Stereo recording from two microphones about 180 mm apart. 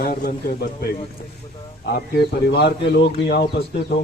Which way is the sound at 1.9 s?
60° left (ahead or behind).